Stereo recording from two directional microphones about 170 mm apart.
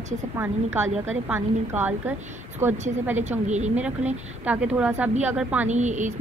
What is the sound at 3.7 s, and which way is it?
A woman's voice, 10° right (ahead or behind).